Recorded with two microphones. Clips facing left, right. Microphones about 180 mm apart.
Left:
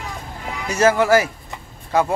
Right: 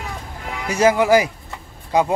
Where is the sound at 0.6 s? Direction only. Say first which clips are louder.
Right 1 dB; 10° right (ahead or behind).